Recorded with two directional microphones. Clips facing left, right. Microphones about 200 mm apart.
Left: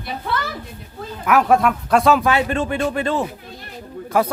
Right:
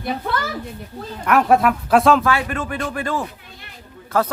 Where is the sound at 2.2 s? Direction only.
20° left (ahead or behind).